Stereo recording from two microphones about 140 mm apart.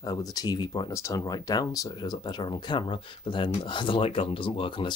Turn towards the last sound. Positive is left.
turn(degrees=35)  # may be behind; listen again after turning